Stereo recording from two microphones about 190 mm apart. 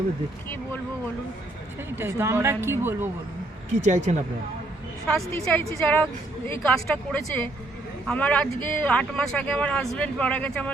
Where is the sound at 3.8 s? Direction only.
35° right (ahead or behind).